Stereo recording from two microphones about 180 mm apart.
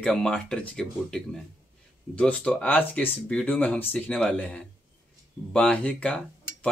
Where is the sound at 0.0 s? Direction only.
5° left (ahead or behind).